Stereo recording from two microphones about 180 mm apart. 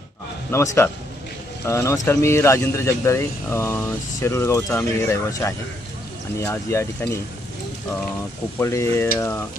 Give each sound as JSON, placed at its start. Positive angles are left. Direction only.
{"t": 0.5, "sound": "speech", "side_deg": 15}
{"t": 8.5, "sound": "speech", "side_deg": 15}